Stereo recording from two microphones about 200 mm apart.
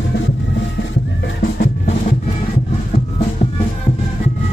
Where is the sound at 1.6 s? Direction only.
40° left (ahead or behind).